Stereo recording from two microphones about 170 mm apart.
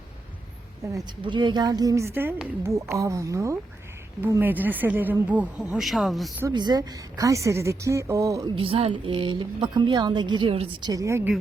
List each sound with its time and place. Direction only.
0.9 s speech: 25° right (ahead or behind); by 6.3 s centre (ahead or behind)
6.5 s speech: 25° right (ahead or behind)
8.5 s speech: 35° right (ahead or behind)